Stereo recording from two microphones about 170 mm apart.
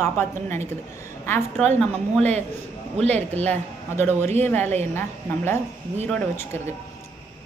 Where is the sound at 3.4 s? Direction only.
15° left (ahead or behind).